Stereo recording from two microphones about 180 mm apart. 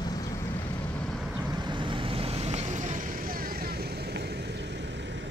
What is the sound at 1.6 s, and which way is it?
Vehicle, 25° right (ahead or behind).